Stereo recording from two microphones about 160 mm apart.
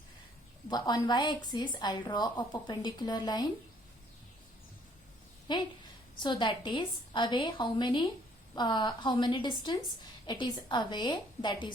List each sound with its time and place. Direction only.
0.7 s a woman's voice: 25° left (ahead or behind)
5.5 s a woman's voice: 30° left (ahead or behind)